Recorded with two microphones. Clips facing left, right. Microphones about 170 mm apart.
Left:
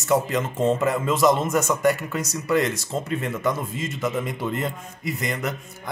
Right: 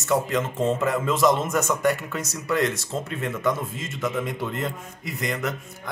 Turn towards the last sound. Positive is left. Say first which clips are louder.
# even
turn(degrees=0)  # may be behind; listen again after turning